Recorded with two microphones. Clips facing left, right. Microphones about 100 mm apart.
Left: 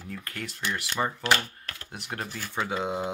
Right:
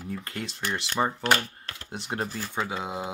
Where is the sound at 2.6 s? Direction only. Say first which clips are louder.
Left 3 dB; 5° right (ahead or behind).